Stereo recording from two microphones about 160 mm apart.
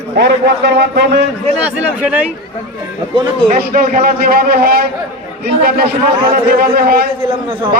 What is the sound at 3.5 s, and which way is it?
A man's voice, 65° right (ahead or behind).